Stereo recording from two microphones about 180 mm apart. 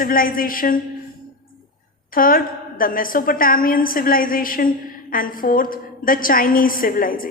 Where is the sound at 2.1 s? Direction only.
50° left (ahead or behind).